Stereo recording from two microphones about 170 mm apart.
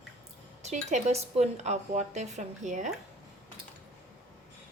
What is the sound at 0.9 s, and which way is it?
A woman's voice, 45° right (ahead or behind).